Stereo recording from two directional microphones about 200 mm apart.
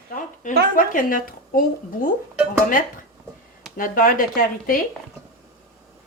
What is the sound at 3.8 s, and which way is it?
Speech, 45° left (ahead or behind).